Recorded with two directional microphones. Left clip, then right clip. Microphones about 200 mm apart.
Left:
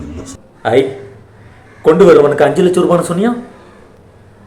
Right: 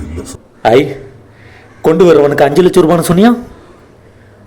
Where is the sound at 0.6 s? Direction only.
45° right (ahead or behind).